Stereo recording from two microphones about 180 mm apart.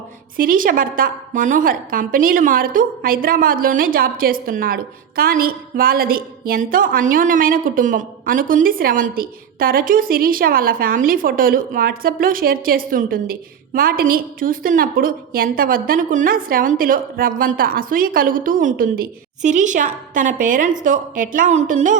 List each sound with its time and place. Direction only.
0.3 s a woman's voice: 50° right (ahead or behind)